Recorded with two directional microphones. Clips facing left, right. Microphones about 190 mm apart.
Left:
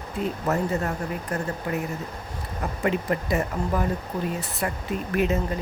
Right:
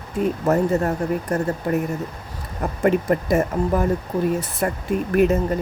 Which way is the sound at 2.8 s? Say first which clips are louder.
Right 7 dB; 45° right (ahead or behind).